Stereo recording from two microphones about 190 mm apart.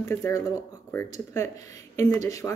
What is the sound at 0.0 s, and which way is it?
Speech, 15° left (ahead or behind).